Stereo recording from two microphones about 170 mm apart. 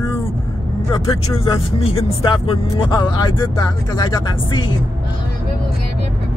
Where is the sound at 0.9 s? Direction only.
30° left (ahead or behind).